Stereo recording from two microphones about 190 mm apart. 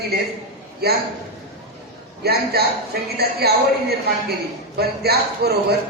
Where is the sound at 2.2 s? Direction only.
55° right (ahead or behind).